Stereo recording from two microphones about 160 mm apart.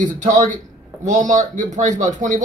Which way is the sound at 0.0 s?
50° right (ahead or behind).